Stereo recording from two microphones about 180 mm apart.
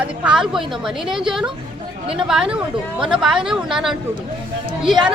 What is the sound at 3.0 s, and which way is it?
Speech, 5° right (ahead or behind).